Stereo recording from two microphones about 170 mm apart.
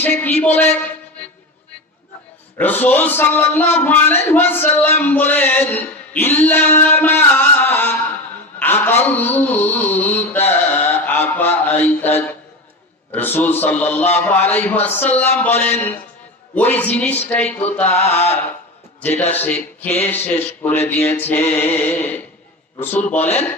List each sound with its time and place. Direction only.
0.0 s a man's voice: 10° left (ahead or behind)
2.6 s a man's voice: 10° left (ahead or behind)
8.5 s a sound: 10° left (ahead or behind)
13.1 s a man's voice: 10° left (ahead or behind)